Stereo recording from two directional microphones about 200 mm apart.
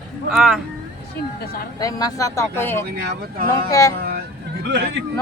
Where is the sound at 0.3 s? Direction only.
Centre (ahead or behind).